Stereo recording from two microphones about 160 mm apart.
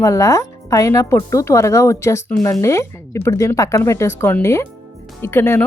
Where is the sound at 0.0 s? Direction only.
20° left (ahead or behind).